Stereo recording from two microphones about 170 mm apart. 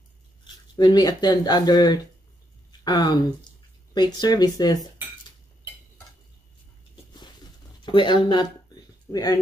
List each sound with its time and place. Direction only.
0.7 s speech: 25° left (ahead or behind)
7.8 s speech: 25° left (ahead or behind)